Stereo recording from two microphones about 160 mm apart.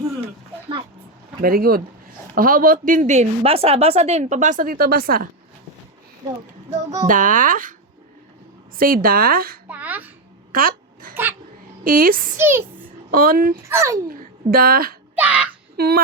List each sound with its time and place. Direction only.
1.4 s speech: 65° right (ahead or behind)
6.2 s speech: 25° right (ahead or behind)
7.1 s speech: 55° right (ahead or behind)
8.8 s speech: 65° right (ahead or behind)
9.6 s a sound: 10° right (ahead or behind)
10.5 s babbling: 60° right (ahead or behind)
11.1 s a sound: 10° right (ahead or behind)
11.8 s speech: 65° right (ahead or behind)
12.4 s a child's voice: 15° right (ahead or behind)
13.1 s speech: 65° right (ahead or behind)
13.7 s a child's voice: 15° right (ahead or behind)
14.1 s a woman's voice: 65° right (ahead or behind)
15.1 s a sound: 10° right (ahead or behind)
15.8 s a sound: 80° right